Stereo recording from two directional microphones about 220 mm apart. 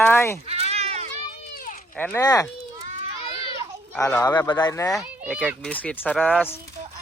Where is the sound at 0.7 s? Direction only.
30° right (ahead or behind).